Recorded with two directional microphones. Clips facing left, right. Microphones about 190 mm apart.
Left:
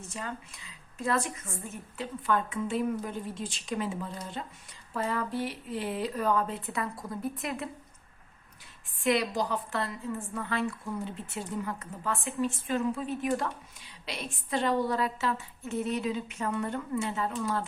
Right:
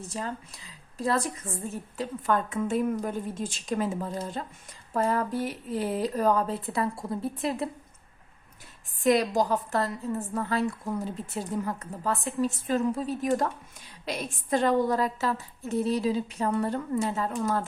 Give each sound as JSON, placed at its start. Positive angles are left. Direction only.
{"t": 0.1, "sound": "a woman's voice", "side_deg": -35}
{"t": 9.0, "sound": "a woman's voice", "side_deg": -45}